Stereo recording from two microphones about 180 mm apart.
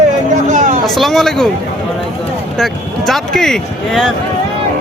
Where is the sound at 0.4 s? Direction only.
40° right (ahead or behind).